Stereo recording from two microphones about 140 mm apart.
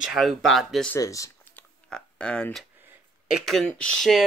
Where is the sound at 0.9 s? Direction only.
25° left (ahead or behind).